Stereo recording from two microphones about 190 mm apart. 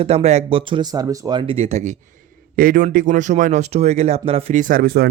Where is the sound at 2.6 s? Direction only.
50° right (ahead or behind).